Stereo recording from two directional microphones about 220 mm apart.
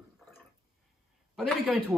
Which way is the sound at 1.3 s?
Centre (ahead or behind).